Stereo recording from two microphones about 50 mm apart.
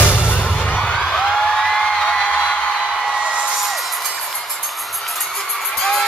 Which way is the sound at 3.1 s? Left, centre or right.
Centre.